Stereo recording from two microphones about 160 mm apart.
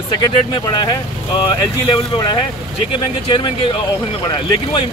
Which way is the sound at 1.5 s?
30° left (ahead or behind).